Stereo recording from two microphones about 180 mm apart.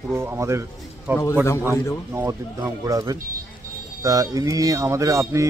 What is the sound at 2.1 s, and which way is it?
Speech, 20° right (ahead or behind).